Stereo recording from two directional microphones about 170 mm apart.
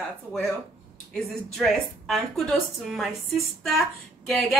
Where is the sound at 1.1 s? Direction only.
5° left (ahead or behind).